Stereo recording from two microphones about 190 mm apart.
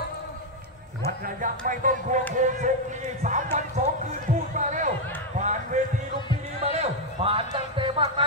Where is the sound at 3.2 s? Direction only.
40° right (ahead or behind).